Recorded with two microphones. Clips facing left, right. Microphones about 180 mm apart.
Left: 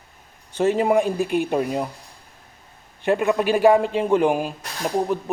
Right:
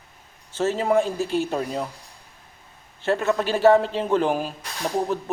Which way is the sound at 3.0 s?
15° left (ahead or behind).